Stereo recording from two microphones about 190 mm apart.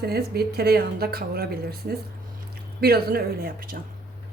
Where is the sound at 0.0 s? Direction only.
55° right (ahead or behind).